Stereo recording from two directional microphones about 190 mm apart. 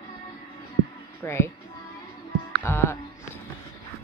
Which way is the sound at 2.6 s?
15° left (ahead or behind).